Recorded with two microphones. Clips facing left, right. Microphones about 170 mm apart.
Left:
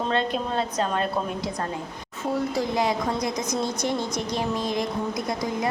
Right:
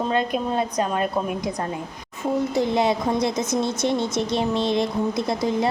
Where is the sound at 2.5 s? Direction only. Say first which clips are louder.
Right 4 dB; 25° right (ahead or behind).